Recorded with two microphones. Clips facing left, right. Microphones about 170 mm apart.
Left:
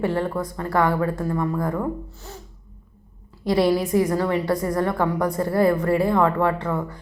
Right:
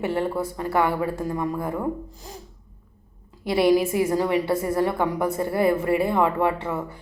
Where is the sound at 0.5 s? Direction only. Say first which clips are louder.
Left 3 dB; 10° right (ahead or behind).